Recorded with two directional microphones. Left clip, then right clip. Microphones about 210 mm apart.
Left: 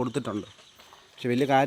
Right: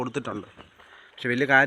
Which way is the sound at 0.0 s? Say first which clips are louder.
Even; 65° left (ahead or behind).